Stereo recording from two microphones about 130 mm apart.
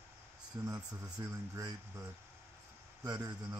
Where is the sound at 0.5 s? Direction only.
25° right (ahead or behind).